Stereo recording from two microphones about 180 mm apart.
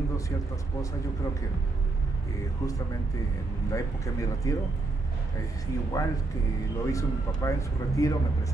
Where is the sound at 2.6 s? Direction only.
15° left (ahead or behind).